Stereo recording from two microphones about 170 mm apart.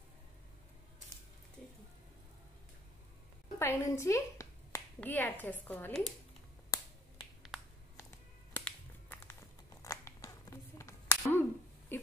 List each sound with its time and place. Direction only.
3.5 s speech: 15° left (ahead or behind)
6.7 s finger snapping: 20° left (ahead or behind)
8.5 s crumpling: 10° left (ahead or behind)
11.9 s a sound: 15° left (ahead or behind)